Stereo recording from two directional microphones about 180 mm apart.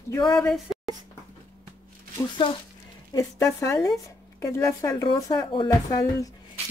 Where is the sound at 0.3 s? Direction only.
5° left (ahead or behind).